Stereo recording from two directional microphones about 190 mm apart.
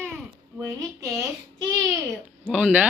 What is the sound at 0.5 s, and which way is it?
Speech, 15° right (ahead or behind).